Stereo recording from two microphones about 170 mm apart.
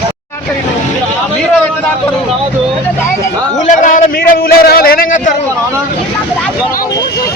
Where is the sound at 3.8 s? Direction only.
50° left (ahead or behind).